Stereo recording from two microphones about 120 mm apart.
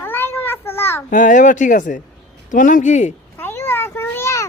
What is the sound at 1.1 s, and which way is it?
Speech, 90° left.